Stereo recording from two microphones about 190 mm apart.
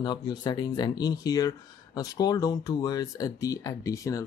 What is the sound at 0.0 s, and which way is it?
Speech, 20° left (ahead or behind).